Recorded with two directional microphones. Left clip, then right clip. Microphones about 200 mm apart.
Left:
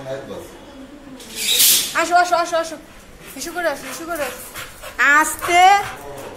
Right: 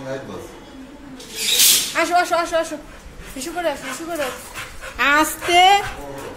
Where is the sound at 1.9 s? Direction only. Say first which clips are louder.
Left 2 dB; 25° right (ahead or behind).